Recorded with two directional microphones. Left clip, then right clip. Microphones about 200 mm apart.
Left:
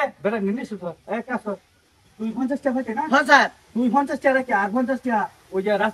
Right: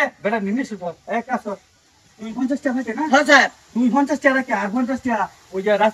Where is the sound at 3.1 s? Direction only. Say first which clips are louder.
Right 2 dB; 15° left (ahead or behind).